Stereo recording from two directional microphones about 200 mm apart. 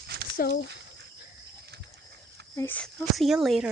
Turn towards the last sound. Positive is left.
turn(degrees=0)  # may be behind; listen again after turning